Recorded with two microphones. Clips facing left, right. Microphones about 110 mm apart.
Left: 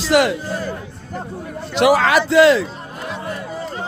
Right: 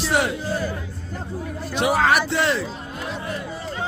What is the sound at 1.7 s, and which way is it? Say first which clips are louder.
Speech: left 5 dB; 90° left.